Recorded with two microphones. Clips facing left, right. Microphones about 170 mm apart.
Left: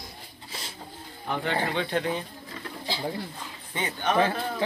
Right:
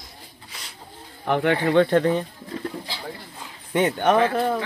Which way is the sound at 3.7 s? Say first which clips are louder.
Right 9 dB; 55° right (ahead or behind).